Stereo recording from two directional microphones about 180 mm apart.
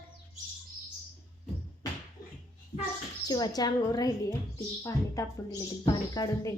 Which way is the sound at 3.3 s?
20° left (ahead or behind).